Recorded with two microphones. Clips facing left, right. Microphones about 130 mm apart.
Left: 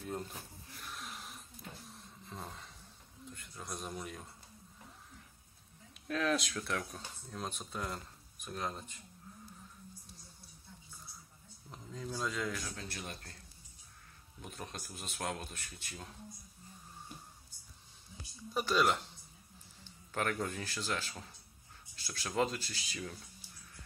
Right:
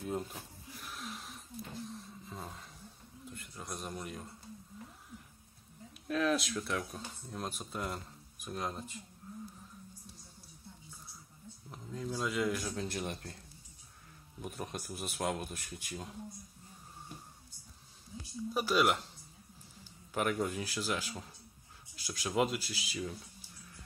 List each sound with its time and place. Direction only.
0.0 s a sound: 5° right (ahead or behind)
3.3 s a man's voice: centre (ahead or behind)
6.0 s speech: centre (ahead or behind)
11.7 s speech: 5° right (ahead or behind); by 13.1 s 20° right (ahead or behind)
14.4 s speech: 10° right (ahead or behind)
18.5 s a man's voice: 5° right (ahead or behind)